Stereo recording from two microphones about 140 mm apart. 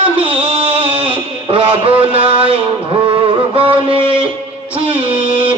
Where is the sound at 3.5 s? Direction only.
40° right (ahead or behind).